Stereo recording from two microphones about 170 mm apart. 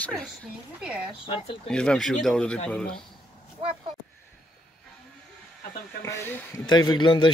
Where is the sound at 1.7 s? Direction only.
5° left (ahead or behind).